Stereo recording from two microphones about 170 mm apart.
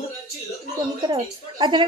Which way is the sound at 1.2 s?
25° right (ahead or behind).